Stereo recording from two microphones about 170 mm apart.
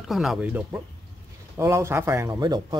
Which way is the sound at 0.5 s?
10° right (ahead or behind).